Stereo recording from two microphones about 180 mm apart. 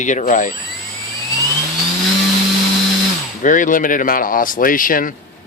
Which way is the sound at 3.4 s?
45° left (ahead or behind).